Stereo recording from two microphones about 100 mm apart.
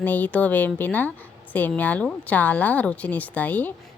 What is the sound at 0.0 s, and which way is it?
A woman's voice, 15° left (ahead or behind).